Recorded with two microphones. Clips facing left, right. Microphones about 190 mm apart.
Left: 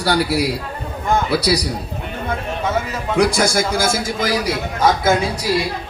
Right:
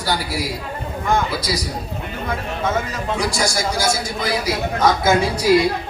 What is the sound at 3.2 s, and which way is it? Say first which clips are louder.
Speech: left 8 dB; 55° left (ahead or behind).